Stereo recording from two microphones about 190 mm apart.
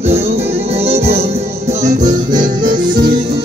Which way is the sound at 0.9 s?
30° right (ahead or behind).